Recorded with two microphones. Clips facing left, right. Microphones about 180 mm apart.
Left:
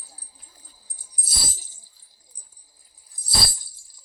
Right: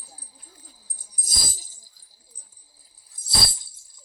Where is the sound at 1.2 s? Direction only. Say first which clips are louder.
Even; 40° right (ahead or behind).